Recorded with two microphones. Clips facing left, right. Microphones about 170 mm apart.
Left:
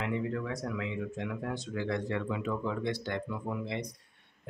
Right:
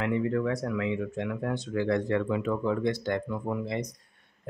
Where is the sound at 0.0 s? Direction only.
60° right (ahead or behind).